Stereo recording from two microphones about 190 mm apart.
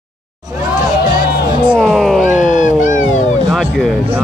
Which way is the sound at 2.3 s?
40° left (ahead or behind).